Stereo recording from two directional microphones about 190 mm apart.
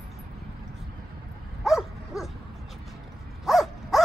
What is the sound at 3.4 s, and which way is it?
Dog, centre (ahead or behind).